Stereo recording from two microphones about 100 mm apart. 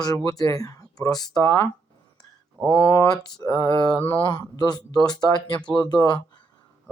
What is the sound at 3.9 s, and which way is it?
Mantra, 20° left (ahead or behind).